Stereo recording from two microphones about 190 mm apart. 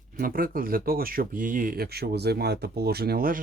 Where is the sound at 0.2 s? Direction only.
50° right (ahead or behind).